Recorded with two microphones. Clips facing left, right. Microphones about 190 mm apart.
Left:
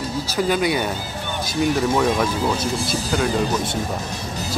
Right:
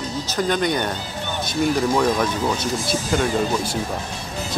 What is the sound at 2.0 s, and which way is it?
Speech, centre (ahead or behind).